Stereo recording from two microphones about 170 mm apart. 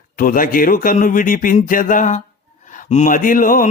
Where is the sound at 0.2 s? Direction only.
55° left (ahead or behind).